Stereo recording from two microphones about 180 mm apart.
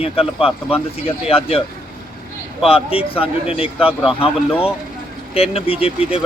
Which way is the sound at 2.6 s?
30° left (ahead or behind).